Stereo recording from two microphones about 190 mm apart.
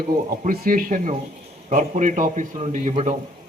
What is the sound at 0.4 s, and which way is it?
A man's voice, 50° right (ahead or behind).